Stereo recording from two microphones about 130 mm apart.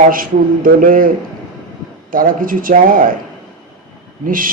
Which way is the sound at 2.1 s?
90° right.